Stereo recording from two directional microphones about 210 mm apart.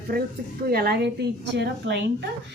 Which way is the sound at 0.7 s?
50° right (ahead or behind).